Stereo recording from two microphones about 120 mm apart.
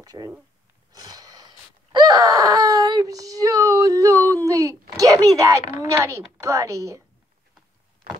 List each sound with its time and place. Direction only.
0.0 s speech: 30° right (ahead or behind)
0.9 s a sound: 30° right (ahead or behind)
4.5 s a child's voice: 25° right (ahead or behind)